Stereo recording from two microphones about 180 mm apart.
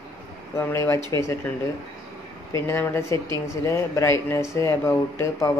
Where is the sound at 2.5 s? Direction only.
15° left (ahead or behind).